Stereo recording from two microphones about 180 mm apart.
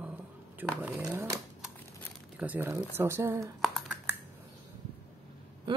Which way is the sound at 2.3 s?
10° right (ahead or behind).